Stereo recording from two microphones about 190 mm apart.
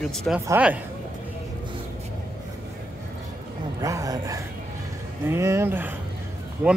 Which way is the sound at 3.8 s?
20° right (ahead or behind).